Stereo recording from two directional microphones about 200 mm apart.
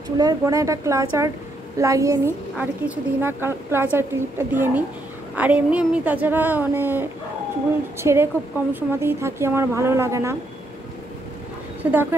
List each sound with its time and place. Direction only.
0.2 s a woman's voice: 20° right (ahead or behind)
11.8 s a woman's voice: 10° right (ahead or behind)